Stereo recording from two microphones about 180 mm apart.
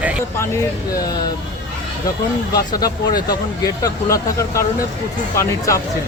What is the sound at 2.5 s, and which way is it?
Speech, 20° left (ahead or behind).